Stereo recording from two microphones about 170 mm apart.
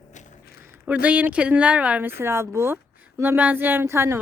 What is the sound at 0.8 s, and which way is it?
A woman's voice, 10° right (ahead or behind).